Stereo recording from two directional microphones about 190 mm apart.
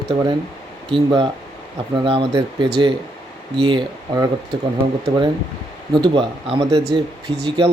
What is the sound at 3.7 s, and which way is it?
Speech, 20° right (ahead or behind).